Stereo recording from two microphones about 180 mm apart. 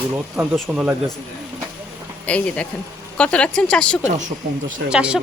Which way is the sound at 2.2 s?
5° left (ahead or behind).